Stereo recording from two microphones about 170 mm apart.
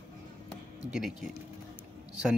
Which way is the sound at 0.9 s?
5° right (ahead or behind).